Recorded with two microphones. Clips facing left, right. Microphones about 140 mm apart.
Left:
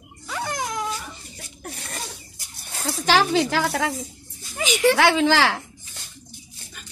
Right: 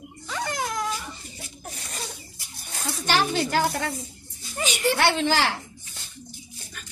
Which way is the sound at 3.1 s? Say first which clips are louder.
Left 4 dB; 90° left.